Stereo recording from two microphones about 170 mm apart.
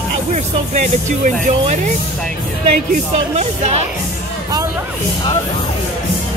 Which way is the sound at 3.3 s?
40° right (ahead or behind).